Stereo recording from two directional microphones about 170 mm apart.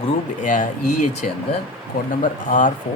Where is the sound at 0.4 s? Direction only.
50° left (ahead or behind).